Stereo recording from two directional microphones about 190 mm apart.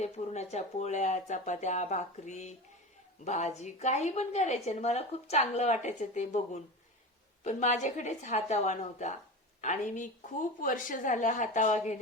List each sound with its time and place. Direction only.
0.0 s a woman's voice: 35° left (ahead or behind)